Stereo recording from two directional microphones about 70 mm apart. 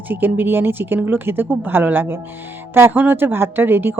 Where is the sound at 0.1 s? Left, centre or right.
Right.